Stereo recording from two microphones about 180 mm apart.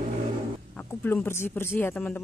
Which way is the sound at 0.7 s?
10° left (ahead or behind).